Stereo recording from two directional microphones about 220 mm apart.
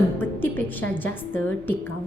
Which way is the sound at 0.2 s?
10° left (ahead or behind).